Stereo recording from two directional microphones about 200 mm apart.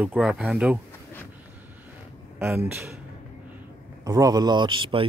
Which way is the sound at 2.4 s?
10° right (ahead or behind).